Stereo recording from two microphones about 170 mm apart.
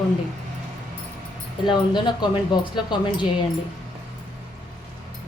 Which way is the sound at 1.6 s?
25° left (ahead or behind).